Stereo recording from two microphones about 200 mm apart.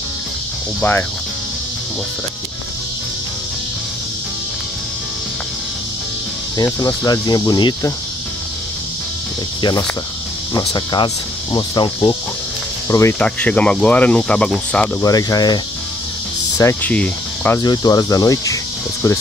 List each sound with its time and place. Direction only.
0.7 s speech: 10° left (ahead or behind)
6.5 s speech: 15° left (ahead or behind)
9.6 s cricket: 20° left (ahead or behind)
10.5 s speech: 20° left (ahead or behind)
12.8 s cricket: 15° left (ahead or behind)
15.0 s speech: 15° left (ahead or behind)
17.6 s speech: 20° left (ahead or behind)